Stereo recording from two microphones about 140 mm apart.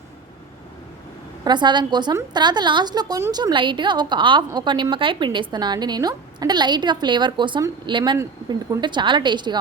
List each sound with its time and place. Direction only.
1.5 s speech: 30° right (ahead or behind)